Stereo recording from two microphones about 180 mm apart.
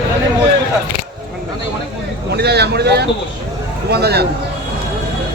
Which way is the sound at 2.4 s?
65° right (ahead or behind).